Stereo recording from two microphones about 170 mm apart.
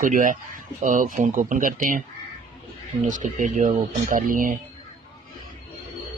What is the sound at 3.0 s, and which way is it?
Speech, 50° right (ahead or behind).